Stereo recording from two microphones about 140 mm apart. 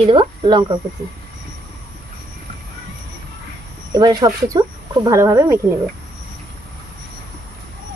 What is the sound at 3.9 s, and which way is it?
Speech, 25° right (ahead or behind).